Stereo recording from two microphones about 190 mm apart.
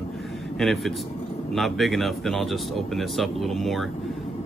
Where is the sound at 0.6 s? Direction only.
Centre (ahead or behind).